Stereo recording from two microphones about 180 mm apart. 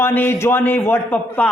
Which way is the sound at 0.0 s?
10° left (ahead or behind).